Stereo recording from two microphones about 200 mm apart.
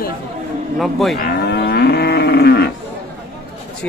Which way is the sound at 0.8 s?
Centre (ahead or behind).